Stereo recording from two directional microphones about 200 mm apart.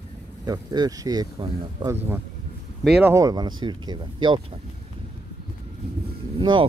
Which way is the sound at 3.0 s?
15° right (ahead or behind).